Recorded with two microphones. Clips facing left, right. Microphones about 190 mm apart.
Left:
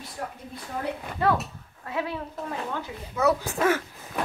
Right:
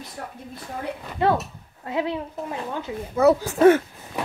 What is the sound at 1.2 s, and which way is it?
Speech, 25° right (ahead or behind).